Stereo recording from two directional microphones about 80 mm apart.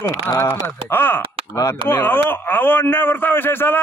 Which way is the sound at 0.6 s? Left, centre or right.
Left.